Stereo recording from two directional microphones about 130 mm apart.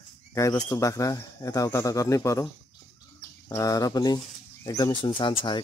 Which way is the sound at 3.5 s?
25° left (ahead or behind).